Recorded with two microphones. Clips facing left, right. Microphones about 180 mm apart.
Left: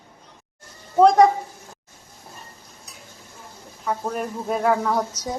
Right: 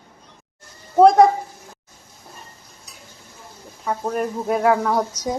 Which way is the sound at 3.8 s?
Centre (ahead or behind).